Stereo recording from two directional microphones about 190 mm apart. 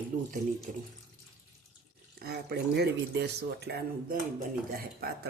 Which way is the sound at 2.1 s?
55° right (ahead or behind).